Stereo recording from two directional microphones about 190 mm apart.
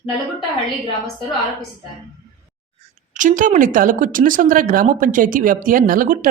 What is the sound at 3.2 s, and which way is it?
Speech, 45° right (ahead or behind).